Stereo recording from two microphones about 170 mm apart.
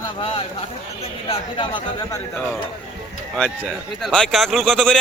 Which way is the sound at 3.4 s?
Centre (ahead or behind).